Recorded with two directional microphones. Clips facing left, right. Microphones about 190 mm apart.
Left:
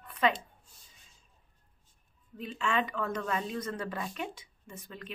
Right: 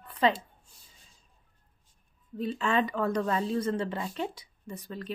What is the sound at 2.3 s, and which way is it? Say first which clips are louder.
Speech: right 4 dB; 35° right (ahead or behind).